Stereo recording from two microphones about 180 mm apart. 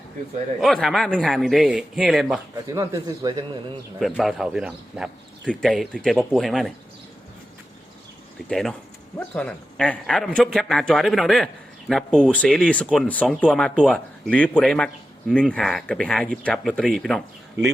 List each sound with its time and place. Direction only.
0.6 s speech: centre (ahead or behind)
2.6 s a man's voice: 20° right (ahead or behind)
4.0 s speech: centre (ahead or behind)
8.4 s speech: centre (ahead or behind)